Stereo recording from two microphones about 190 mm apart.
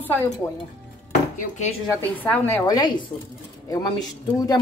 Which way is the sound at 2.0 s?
10° left (ahead or behind).